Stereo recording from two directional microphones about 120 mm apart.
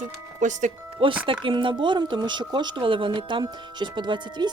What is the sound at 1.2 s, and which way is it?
Speech, 45° right (ahead or behind).